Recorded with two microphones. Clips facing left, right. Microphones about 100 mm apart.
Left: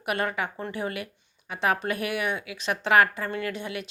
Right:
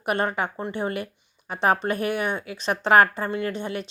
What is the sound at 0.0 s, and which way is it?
Speech, 30° right (ahead or behind).